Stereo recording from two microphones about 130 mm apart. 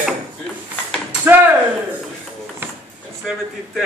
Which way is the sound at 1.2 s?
15° right (ahead or behind).